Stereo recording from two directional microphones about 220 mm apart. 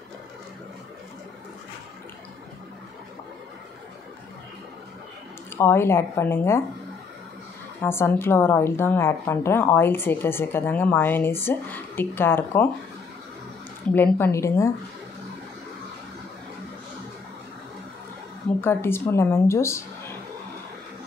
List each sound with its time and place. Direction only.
5.6 s a woman's voice: 10° left (ahead or behind)
7.8 s a woman's voice: 10° left (ahead or behind)
13.9 s a woman's voice: 10° left (ahead or behind)
18.6 s a woman's voice: 10° left (ahead or behind)